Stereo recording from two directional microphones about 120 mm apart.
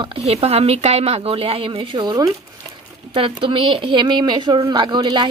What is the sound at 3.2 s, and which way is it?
Speech, 45° right (ahead or behind).